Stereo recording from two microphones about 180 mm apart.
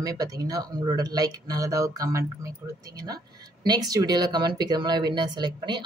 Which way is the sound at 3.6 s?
20° right (ahead or behind).